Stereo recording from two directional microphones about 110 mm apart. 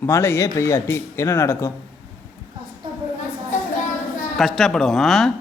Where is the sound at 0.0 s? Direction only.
25° left (ahead or behind).